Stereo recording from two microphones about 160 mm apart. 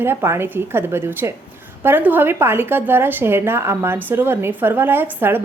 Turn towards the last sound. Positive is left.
turn(degrees=-15)  # may be behind; listen again after turning